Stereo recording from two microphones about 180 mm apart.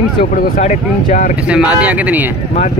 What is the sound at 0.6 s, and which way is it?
Speech, 45° left (ahead or behind).